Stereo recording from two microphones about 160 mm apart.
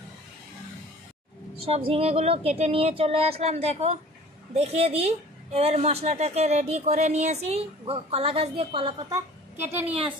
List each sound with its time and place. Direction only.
1.6 s a woman's voice: 35° right (ahead or behind)
9.1 s a child's voice: 10° right (ahead or behind)